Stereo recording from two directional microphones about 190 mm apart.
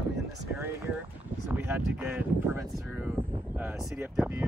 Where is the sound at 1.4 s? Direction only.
10° right (ahead or behind).